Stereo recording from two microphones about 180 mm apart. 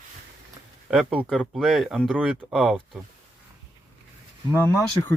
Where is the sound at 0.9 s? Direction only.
Centre (ahead or behind).